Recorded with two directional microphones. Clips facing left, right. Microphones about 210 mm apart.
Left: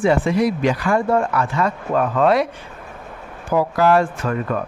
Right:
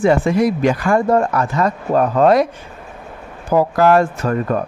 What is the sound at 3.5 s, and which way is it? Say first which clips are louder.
Speech: right 3 dB; 45° right (ahead or behind).